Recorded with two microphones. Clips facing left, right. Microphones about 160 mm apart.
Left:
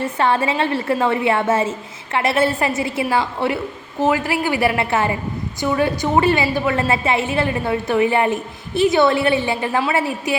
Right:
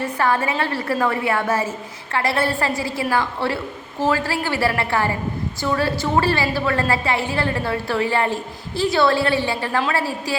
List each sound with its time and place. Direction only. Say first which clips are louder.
0.0 s a woman's voice: left 2 dB; 25° left (ahead or behind)